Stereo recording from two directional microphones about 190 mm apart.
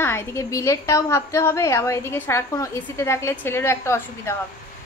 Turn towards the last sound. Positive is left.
turn(degrees=15)  # may be behind; listen again after turning